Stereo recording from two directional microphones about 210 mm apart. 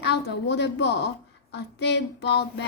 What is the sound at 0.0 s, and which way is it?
Speech, 55° left (ahead or behind).